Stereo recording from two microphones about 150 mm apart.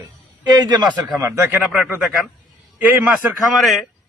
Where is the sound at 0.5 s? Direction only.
30° right (ahead or behind).